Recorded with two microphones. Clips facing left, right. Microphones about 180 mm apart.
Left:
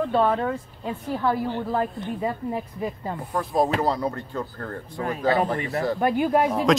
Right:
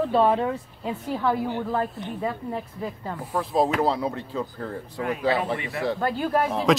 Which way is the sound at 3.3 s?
Centre (ahead or behind).